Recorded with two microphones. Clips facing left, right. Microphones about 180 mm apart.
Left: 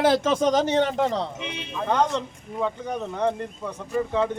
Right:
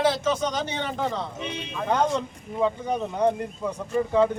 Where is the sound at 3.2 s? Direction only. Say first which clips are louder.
Right 2 dB; 10° right (ahead or behind).